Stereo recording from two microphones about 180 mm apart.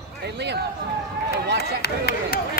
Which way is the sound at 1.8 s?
60° left (ahead or behind).